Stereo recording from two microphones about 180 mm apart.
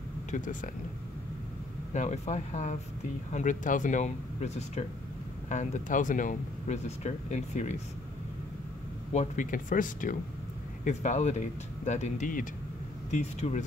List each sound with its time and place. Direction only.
0.3 s speech: 45° left (ahead or behind)
2.0 s speech: 40° left (ahead or behind)
9.1 s speech: 40° left (ahead or behind)